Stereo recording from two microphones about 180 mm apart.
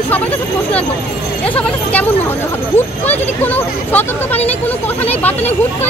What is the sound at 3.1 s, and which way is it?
Speech, 10° left (ahead or behind).